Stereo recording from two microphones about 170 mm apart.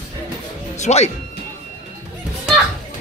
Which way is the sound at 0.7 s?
40° left (ahead or behind).